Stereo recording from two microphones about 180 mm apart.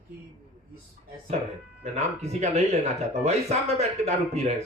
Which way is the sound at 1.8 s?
35° right (ahead or behind).